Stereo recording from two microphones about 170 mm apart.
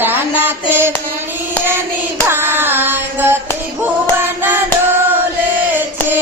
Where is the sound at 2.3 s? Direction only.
15° right (ahead or behind).